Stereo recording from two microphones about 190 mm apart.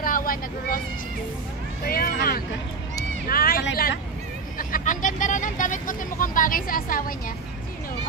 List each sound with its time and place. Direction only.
0.0 s vehicle: 50° left (ahead or behind)
1.9 s a sound: 50° left (ahead or behind)
3.3 s vehicle: 50° left (ahead or behind)